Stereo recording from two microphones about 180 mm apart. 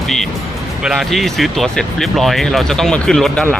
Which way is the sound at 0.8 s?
Centre (ahead or behind).